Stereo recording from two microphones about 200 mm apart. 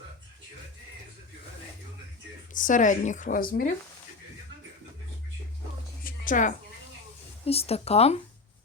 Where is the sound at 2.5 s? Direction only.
40° left (ahead or behind).